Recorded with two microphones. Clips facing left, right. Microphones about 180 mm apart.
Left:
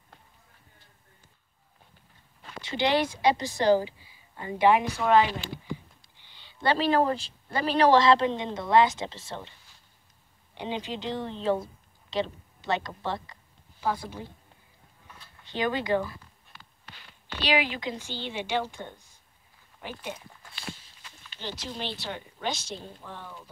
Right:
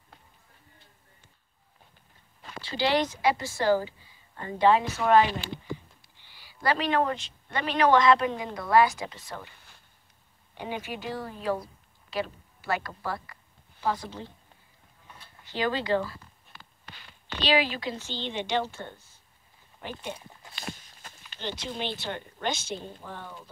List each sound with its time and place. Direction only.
2.6 s a woman's voice: 20° left (ahead or behind)
6.3 s speech: 25° left (ahead or behind)
10.5 s speech: 20° left (ahead or behind)
13.7 s speech: 10° left (ahead or behind)
15.5 s a woman's voice: 20° left (ahead or behind)
17.4 s a woman's voice: 15° left (ahead or behind)
21.0 s a sound: 50° right (ahead or behind)
21.4 s speech: 5° left (ahead or behind)